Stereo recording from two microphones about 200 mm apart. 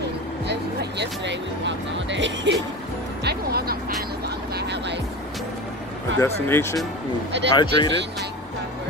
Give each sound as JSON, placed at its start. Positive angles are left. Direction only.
{"t": 0.5, "sound": "speech", "side_deg": -60}
{"t": 3.3, "sound": "music", "side_deg": -50}
{"t": 6.1, "sound": "speech", "side_deg": 15}
{"t": 7.5, "sound": "speech", "side_deg": 25}